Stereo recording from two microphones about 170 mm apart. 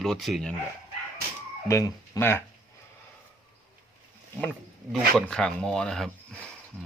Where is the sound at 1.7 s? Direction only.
20° left (ahead or behind).